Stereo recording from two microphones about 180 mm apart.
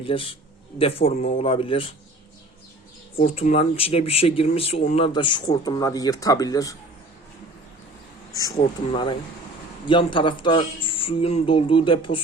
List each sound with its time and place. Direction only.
0.0 s speech: 30° left (ahead or behind)
3.2 s speech: 35° left (ahead or behind)
4.8 s speech: 45° left (ahead or behind)
5.0 s speech: 25° left (ahead or behind)
8.4 s speech: 20° left (ahead or behind)
8.9 s speech: 30° left (ahead or behind)